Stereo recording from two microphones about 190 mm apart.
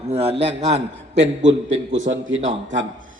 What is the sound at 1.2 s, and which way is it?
A man's voice, 75° right (ahead or behind).